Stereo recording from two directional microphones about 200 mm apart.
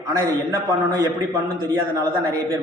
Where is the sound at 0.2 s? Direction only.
15° right (ahead or behind).